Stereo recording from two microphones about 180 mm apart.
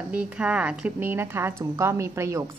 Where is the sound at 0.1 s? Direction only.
5° right (ahead or behind).